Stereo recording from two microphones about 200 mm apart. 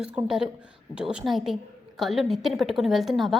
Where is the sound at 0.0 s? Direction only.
5° right (ahead or behind).